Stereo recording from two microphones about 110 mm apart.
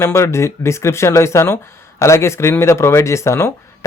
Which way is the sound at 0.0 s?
25° left (ahead or behind).